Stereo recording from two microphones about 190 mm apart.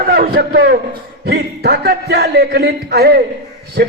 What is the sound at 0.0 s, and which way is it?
A man's voice, 55° right (ahead or behind).